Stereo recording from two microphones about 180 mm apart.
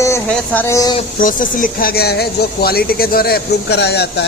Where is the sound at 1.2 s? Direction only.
50° left (ahead or behind).